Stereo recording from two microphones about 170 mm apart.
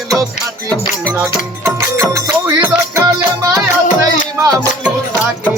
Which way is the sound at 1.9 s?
10° right (ahead or behind).